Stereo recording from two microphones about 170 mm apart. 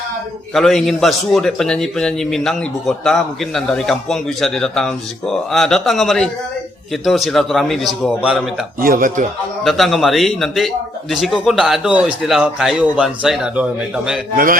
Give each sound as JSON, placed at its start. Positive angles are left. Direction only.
{"t": 0.5, "sound": "a man's voice", "side_deg": 0}
{"t": 8.8, "sound": "speech", "side_deg": -55}
{"t": 9.6, "sound": "a man's voice", "side_deg": 0}